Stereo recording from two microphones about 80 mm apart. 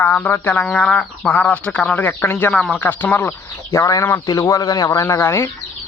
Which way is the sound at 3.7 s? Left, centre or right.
Left.